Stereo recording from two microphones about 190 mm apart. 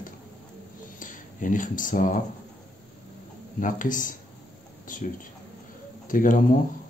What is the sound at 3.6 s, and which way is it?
Speech, 45° left (ahead or behind).